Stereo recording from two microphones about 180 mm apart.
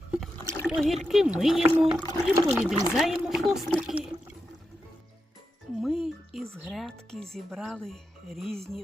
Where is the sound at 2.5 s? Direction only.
5° right (ahead or behind).